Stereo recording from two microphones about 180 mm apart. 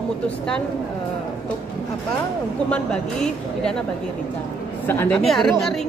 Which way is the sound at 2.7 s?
5° left (ahead or behind).